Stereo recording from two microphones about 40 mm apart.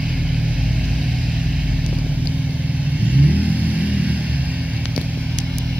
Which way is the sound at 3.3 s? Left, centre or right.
Right.